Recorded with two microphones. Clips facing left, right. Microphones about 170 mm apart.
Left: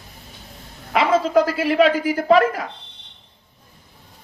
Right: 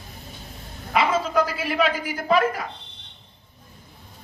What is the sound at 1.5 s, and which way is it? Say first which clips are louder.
Speech: left 7 dB; 90° left.